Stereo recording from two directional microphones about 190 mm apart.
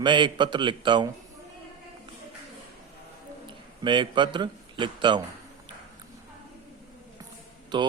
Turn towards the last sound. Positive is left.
turn(degrees=-25)  # may be behind; listen again after turning